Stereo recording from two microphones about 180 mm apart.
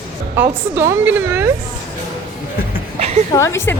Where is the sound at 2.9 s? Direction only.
40° right (ahead or behind).